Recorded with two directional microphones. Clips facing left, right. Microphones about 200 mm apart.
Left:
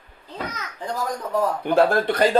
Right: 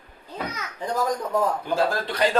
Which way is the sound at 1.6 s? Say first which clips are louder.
Left 6 dB; 60° left (ahead or behind).